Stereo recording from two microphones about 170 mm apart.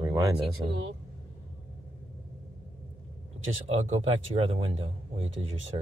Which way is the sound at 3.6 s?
40° right (ahead or behind).